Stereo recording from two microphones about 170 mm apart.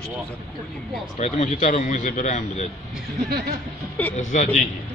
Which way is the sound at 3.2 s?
65° right (ahead or behind).